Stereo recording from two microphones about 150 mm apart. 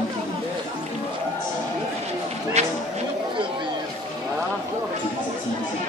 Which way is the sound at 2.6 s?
45° right (ahead or behind).